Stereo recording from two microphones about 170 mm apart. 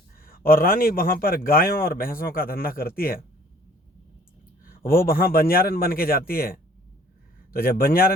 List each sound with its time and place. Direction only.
0.2 s a man's voice: 60° left (ahead or behind)
4.6 s a man's voice: 60° left (ahead or behind)